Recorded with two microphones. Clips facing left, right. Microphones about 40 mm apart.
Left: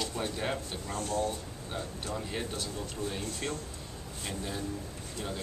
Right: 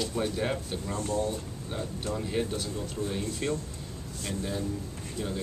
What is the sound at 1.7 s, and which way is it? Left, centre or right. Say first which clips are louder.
Speech: right 3 dB; centre.